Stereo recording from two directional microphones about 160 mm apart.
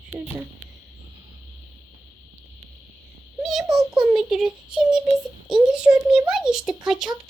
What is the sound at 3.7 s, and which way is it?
Child singing, centre (ahead or behind).